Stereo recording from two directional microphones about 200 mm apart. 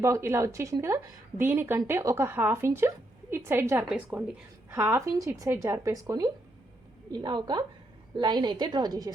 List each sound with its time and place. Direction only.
0.0 s a woman's voice: 15° right (ahead or behind)